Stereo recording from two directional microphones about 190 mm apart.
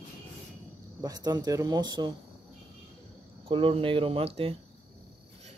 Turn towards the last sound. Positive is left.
turn(degrees=-30)  # may be behind; listen again after turning